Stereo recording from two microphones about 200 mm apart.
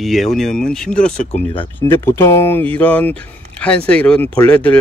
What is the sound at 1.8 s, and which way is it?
Speech, 10° left (ahead or behind).